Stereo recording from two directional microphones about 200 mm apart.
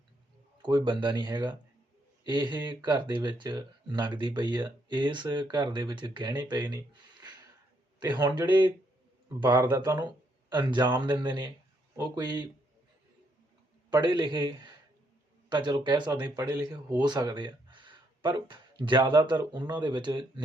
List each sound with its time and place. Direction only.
0.6 s speech: 25° right (ahead or behind)
13.9 s a man's voice: 20° right (ahead or behind)